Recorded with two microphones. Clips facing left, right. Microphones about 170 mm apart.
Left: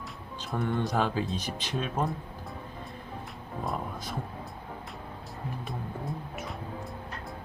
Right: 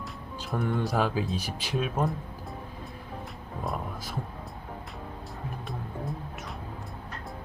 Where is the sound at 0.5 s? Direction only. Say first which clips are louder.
Right 1 dB; centre (ahead or behind).